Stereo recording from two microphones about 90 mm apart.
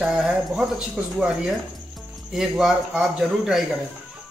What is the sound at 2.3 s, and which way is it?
A man's voice, 5° right (ahead or behind).